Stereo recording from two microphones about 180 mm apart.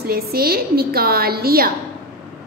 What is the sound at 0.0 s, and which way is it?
A woman's voice, 60° right (ahead or behind).